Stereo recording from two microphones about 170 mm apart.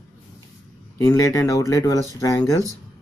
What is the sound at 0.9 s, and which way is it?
Speech, 20° left (ahead or behind).